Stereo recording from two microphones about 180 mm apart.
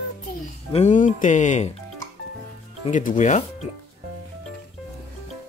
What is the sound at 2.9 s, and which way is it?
Speech, 45° left (ahead or behind).